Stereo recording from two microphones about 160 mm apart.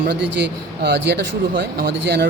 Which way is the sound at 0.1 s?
90° right.